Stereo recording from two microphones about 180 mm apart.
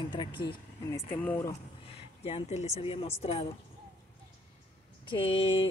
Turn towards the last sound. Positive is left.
turn(degrees=30)  # may be behind; listen again after turning